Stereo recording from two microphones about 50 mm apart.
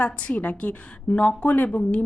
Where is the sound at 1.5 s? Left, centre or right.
Left.